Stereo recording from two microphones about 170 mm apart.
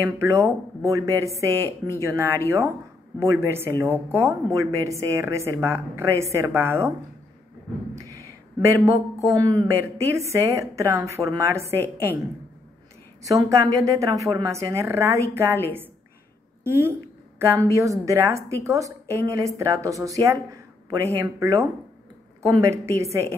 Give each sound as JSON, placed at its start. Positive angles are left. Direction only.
{"t": 0.0, "sound": "a woman's voice", "side_deg": -15}
{"t": 8.8, "sound": "a woman's voice", "side_deg": -20}
{"t": 13.2, "sound": "a woman's voice", "side_deg": -20}
{"t": 16.6, "sound": "a woman's voice", "side_deg": -15}